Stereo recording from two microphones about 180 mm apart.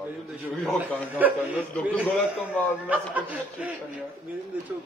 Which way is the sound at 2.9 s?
10° right (ahead or behind).